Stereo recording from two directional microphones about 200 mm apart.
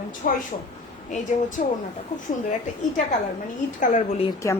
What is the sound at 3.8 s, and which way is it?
Speech, 35° left (ahead or behind).